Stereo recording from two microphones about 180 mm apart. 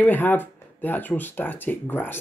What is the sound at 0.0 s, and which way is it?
Speech, 10° left (ahead or behind).